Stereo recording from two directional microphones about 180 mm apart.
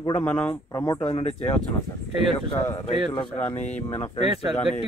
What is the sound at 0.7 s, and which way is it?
Speech, 20° left (ahead or behind).